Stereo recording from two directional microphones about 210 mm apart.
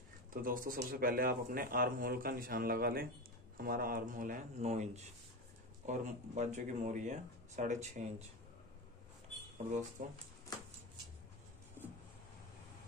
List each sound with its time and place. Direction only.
0.3 s speech: 40° right (ahead or behind)
9.7 s speech: 35° right (ahead or behind)